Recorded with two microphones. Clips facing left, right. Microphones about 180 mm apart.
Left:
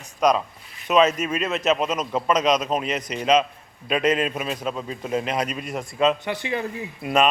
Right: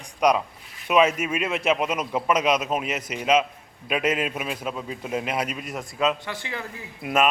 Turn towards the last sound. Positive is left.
turn(degrees=-5)  # may be behind; listen again after turning